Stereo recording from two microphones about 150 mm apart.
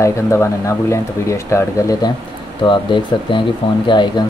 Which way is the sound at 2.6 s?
35° left (ahead or behind).